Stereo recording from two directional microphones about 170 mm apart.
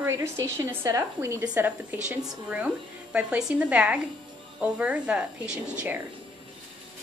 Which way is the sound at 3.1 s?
5° right (ahead or behind).